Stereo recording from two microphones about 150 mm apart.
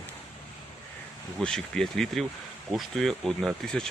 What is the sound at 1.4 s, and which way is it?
Speech, 5° left (ahead or behind).